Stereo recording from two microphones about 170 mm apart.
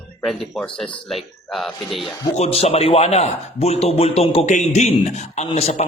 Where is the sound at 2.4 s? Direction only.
40° left (ahead or behind).